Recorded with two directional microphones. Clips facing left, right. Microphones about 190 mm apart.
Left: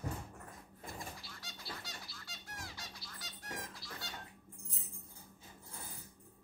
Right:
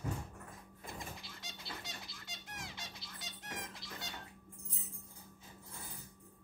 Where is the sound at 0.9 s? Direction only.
20° right (ahead or behind).